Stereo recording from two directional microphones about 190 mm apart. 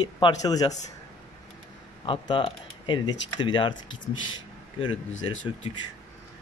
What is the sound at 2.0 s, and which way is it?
Speech, 25° left (ahead or behind).